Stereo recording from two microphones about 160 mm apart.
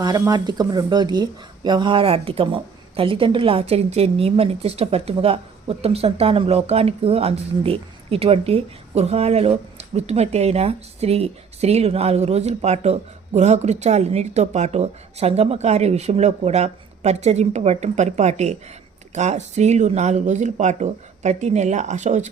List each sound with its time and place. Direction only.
0.0 s speech: 25° right (ahead or behind); by 22.3 s 50° right (ahead or behind)